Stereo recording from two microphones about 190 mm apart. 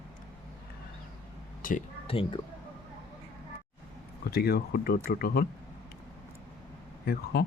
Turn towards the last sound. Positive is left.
turn(degrees=55)  # may be behind; listen again after turning